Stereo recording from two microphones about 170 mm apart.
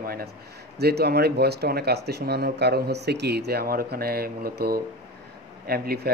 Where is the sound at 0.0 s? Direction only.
60° right (ahead or behind).